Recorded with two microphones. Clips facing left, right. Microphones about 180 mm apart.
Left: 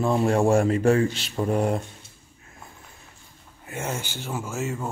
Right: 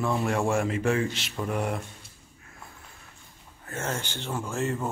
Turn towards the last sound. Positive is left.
turn(degrees=0)  # may be behind; listen again after turning